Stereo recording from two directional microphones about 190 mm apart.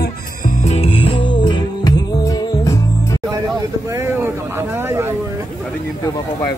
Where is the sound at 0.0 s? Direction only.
45° left (ahead or behind); by 3.2 s 15° left (ahead or behind).